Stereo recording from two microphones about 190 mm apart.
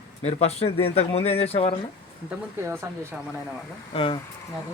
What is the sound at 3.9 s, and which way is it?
Speech, 25° left (ahead or behind).